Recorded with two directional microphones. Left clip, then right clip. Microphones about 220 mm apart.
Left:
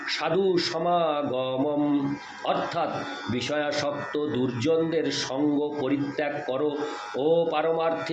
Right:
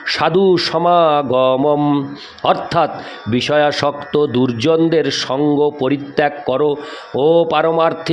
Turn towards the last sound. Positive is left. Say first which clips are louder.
# right 11 dB
turn(degrees=-50)  # may be behind; listen again after turning